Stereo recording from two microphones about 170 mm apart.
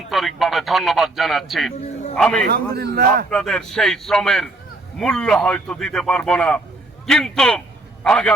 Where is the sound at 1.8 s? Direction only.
40° left (ahead or behind).